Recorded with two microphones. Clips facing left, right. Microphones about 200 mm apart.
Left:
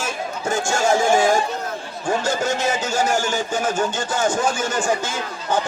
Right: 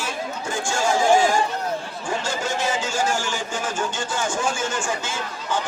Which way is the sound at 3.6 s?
40° left (ahead or behind).